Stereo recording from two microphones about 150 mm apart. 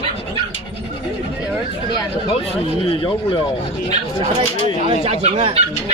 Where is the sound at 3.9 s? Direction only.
45° right (ahead or behind).